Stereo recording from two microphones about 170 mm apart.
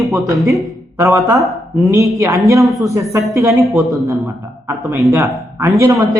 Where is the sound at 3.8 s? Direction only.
Centre (ahead or behind).